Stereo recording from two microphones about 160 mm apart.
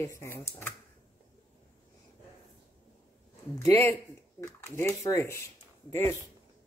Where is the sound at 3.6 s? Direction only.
15° left (ahead or behind).